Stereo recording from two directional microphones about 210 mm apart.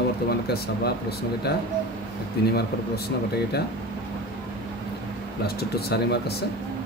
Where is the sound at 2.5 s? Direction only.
50° left (ahead or behind).